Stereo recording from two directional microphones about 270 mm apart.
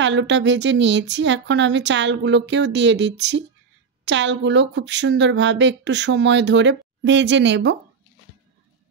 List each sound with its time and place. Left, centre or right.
0.0 s speech: right